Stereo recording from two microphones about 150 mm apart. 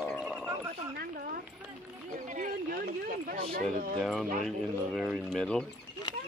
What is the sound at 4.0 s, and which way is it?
Speech, centre (ahead or behind).